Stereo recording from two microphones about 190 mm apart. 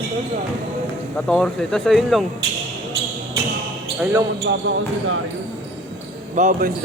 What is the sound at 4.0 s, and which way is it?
Speech, 10° right (ahead or behind).